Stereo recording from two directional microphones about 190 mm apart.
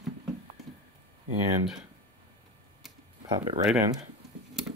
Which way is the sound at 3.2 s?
25° right (ahead or behind).